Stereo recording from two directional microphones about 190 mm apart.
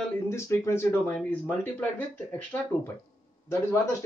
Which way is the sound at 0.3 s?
15° left (ahead or behind).